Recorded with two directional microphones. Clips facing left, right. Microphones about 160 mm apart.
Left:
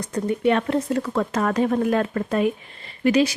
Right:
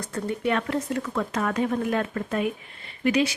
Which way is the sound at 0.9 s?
40° left (ahead or behind).